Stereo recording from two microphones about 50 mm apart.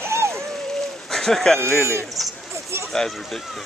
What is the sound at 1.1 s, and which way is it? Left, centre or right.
Speech, centre.